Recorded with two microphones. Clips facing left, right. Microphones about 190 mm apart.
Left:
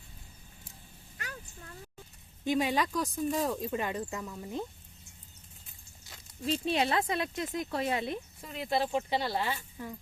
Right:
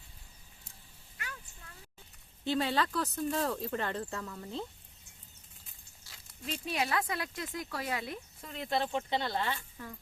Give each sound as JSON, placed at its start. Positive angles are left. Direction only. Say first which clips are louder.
{"t": 2.4, "sound": "speech", "louder": "left 2 dB", "side_deg": 15}
{"t": 6.1, "sound": "dog", "louder": "left 5 dB", "side_deg": 20}
{"t": 6.4, "sound": "speech", "louder": "left 6 dB", "side_deg": 30}
{"t": 8.4, "sound": "speech", "louder": "left 1 dB", "side_deg": 5}
{"t": 9.7, "sound": "speech", "louder": "left 5 dB", "side_deg": 20}